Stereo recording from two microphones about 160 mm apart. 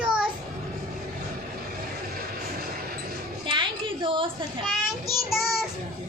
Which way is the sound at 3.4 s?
30° right (ahead or behind).